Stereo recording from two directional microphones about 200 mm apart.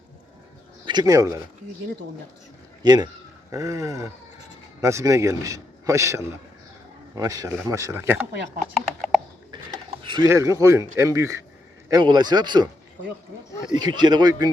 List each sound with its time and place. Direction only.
0.9 s speech: 20° right (ahead or behind)
2.8 s a man's voice: 20° right (ahead or behind)
10.0 s mechanisms: 25° right (ahead or behind)
10.2 s a man's voice: 15° right (ahead or behind)
13.5 s speech: 15° left (ahead or behind)
13.7 s speech: 20° right (ahead or behind)